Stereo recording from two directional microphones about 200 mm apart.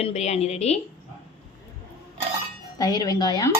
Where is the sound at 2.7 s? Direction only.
20° left (ahead or behind).